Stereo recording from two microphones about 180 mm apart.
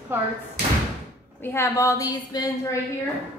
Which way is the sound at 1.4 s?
15° left (ahead or behind).